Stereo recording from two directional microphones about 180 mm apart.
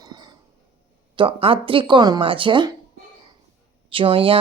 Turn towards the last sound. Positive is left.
turn(degrees=-30)  # may be behind; listen again after turning